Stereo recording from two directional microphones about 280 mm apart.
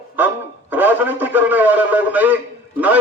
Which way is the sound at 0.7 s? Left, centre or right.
Centre.